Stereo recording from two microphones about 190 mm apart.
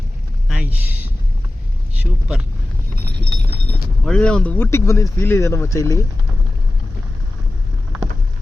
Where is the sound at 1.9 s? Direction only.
5° right (ahead or behind).